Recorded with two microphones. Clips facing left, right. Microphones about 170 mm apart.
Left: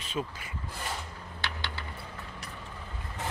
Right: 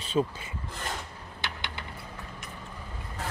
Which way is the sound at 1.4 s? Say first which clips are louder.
Even; 20° right (ahead or behind).